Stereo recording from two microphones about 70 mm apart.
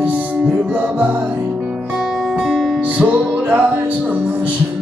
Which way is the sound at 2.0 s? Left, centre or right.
Centre.